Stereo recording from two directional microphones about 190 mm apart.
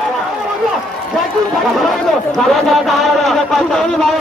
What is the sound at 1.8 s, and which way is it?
A man's voice, centre (ahead or behind).